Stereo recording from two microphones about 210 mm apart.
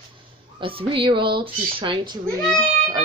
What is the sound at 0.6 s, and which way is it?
A woman's voice, 25° right (ahead or behind).